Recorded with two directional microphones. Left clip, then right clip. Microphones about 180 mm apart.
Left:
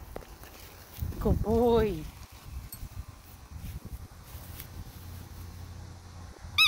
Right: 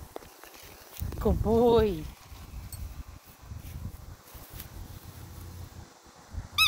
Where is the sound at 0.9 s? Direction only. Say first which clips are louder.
Right 2 dB; 10° right (ahead or behind).